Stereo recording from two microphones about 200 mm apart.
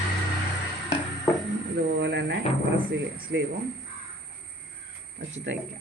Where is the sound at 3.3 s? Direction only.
55° right (ahead or behind).